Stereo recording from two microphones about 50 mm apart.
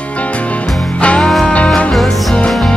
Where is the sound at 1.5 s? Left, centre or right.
Left.